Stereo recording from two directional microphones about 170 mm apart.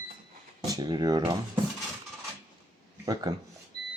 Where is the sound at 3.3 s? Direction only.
20° right (ahead or behind).